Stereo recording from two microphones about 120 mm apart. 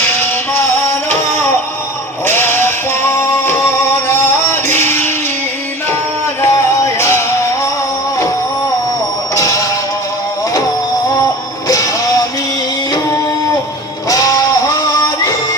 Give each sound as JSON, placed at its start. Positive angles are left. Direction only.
{"t": 0.0, "sound": "music", "side_deg": 15}
{"t": 2.2, "sound": "music", "side_deg": 20}
{"t": 6.4, "sound": "music", "side_deg": 25}
{"t": 9.3, "sound": "music", "side_deg": 30}
{"t": 14.1, "sound": "music", "side_deg": 30}